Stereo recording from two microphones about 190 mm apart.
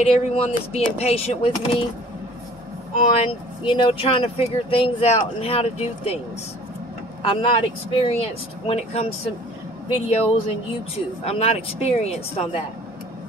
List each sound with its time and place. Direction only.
0.0 s speech: 30° left (ahead or behind)
3.0 s speech: 35° left (ahead or behind)
7.2 s speech: 30° left (ahead or behind)